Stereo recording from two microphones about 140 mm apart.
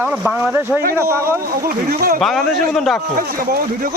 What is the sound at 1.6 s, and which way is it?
Speech, 90° right.